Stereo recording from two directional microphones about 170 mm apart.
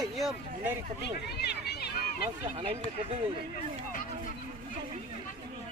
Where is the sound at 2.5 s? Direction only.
35° right (ahead or behind).